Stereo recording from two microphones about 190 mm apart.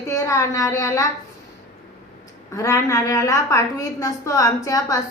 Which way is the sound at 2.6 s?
15° left (ahead or behind).